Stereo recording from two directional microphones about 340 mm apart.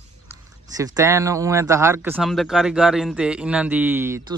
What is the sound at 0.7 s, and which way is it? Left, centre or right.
Speech, centre.